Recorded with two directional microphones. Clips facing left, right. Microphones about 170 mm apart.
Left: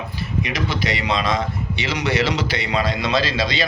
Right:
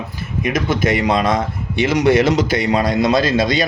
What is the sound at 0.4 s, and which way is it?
Speech, 50° right (ahead or behind).